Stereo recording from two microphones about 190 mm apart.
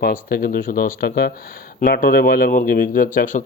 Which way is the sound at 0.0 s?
50° left (ahead or behind).